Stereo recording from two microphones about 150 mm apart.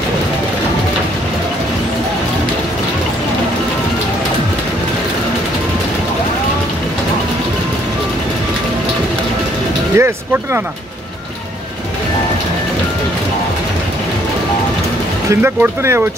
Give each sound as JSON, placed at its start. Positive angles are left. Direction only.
{"t": 9.9, "sound": "speech", "side_deg": -15}
{"t": 15.2, "sound": "speech", "side_deg": -15}